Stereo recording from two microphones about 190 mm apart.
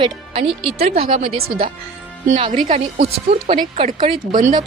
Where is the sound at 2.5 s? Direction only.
40° right (ahead or behind).